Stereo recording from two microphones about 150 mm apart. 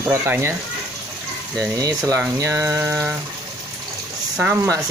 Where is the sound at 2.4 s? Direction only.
20° right (ahead or behind).